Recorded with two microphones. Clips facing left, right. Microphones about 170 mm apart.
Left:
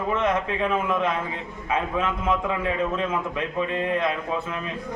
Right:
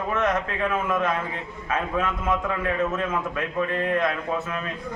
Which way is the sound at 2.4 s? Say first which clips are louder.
Even; 10° left (ahead or behind).